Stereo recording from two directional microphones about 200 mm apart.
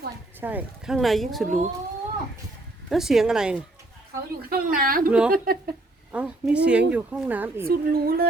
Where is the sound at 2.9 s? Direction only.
Centre (ahead or behind).